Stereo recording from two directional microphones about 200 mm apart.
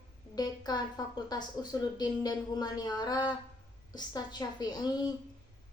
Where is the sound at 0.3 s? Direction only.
20° left (ahead or behind).